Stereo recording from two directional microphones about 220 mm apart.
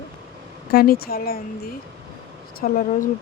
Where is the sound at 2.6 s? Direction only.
40° left (ahead or behind).